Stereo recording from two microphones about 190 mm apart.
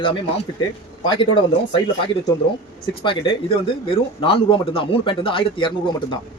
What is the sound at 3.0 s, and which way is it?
Speech, 25° left (ahead or behind).